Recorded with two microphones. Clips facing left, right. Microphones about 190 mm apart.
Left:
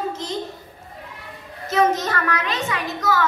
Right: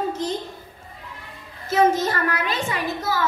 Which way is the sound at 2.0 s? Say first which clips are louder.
Right 1 dB; 30° right (ahead or behind).